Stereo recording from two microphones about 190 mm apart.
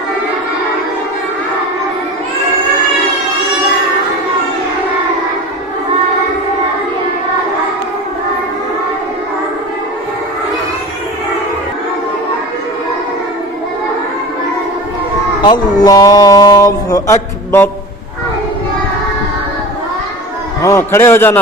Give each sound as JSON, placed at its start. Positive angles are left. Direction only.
{"t": 15.4, "sound": "speech", "side_deg": 25}
{"t": 20.6, "sound": "a man's voice", "side_deg": 15}